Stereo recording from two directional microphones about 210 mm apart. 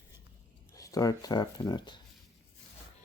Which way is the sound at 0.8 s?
15° left (ahead or behind).